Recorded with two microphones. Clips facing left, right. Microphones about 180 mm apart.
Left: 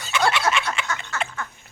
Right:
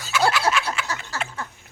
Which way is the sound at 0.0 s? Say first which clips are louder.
Right 1 dB; 5° right (ahead or behind).